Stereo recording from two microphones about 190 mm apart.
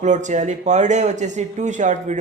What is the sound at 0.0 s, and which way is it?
A man's voice, 40° right (ahead or behind).